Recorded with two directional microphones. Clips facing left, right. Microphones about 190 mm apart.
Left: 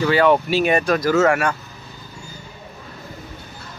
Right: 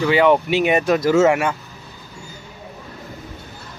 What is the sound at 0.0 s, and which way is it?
Speech, 15° right (ahead or behind).